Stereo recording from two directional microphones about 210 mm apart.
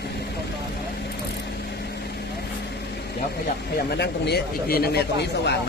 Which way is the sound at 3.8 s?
50° left (ahead or behind).